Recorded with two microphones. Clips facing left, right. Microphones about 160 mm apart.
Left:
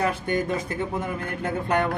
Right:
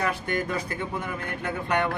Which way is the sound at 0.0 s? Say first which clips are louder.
Left 3 dB; 25° left (ahead or behind).